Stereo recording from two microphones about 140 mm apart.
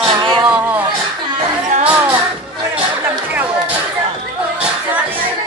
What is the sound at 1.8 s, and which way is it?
Music, 10° right (ahead or behind).